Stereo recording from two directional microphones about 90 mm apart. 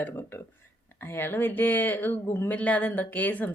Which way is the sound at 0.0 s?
25° left (ahead or behind).